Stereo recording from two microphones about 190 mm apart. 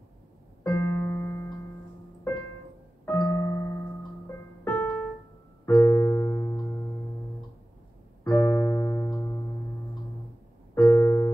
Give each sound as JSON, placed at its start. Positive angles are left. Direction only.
{"t": 0.7, "sound": "keyboard", "side_deg": 10}
{"t": 3.1, "sound": "keyboard", "side_deg": 10}
{"t": 4.6, "sound": "piano", "side_deg": 10}
{"t": 5.7, "sound": "keyboard", "side_deg": 15}
{"t": 8.2, "sound": "keyboard", "side_deg": 15}
{"t": 10.7, "sound": "keyboard", "side_deg": 15}